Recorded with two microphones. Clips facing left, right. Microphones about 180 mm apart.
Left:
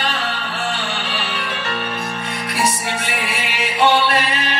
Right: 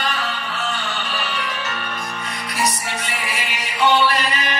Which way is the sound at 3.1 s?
60° left (ahead or behind).